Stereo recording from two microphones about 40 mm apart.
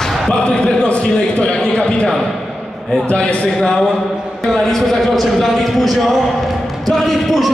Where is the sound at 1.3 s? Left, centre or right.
Left.